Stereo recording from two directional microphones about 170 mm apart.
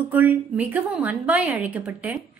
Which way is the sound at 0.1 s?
10° right (ahead or behind).